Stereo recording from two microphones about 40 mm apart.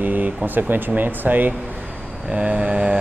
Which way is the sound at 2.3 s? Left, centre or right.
Right.